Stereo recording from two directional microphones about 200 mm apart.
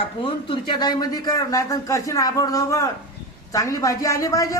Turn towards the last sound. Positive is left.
turn(degrees=15)  # may be behind; listen again after turning